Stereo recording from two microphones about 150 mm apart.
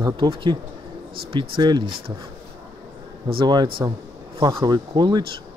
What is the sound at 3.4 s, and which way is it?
Speech, 30° right (ahead or behind).